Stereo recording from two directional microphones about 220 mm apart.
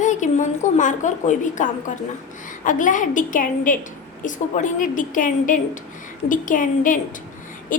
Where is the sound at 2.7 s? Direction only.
35° left (ahead or behind).